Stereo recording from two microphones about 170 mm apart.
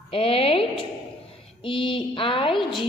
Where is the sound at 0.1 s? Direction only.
35° left (ahead or behind).